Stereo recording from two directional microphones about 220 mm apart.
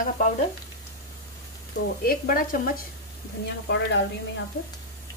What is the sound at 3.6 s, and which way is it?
Speech, 50° left (ahead or behind).